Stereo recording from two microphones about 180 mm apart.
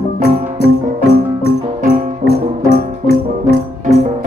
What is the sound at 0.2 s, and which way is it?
Music, 60° left (ahead or behind).